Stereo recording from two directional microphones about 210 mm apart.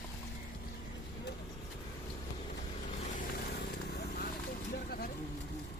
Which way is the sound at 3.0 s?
40° left (ahead or behind).